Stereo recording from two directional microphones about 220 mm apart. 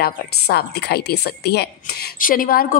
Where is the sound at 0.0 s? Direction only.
45° left (ahead or behind).